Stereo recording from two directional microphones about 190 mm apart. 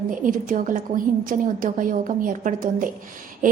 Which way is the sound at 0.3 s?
45° right (ahead or behind).